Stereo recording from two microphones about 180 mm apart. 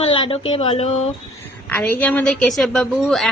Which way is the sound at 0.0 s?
30° left (ahead or behind).